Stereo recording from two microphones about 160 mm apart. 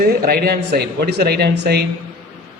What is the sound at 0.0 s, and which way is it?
Speech, 70° right (ahead or behind).